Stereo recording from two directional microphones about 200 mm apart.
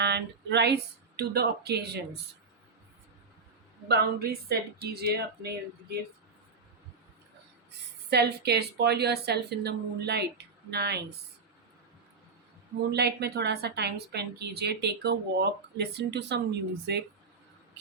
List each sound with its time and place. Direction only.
0.0 s speech: 55° right (ahead or behind)
3.8 s speech: 55° right (ahead or behind)
8.1 s a woman's voice: 55° right (ahead or behind)
12.9 s a woman's voice: 55° right (ahead or behind)